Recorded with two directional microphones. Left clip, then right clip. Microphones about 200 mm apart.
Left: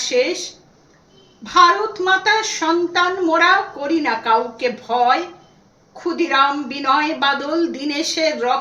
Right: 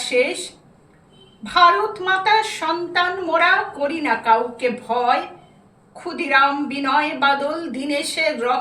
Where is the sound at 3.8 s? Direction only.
15° left (ahead or behind).